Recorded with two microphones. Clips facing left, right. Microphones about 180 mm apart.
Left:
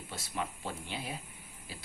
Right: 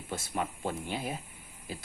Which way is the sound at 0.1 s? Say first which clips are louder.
Right 5 dB; 50° right (ahead or behind).